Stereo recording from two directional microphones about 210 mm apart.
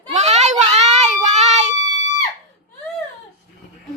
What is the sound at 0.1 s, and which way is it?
Child singing, 35° right (ahead or behind).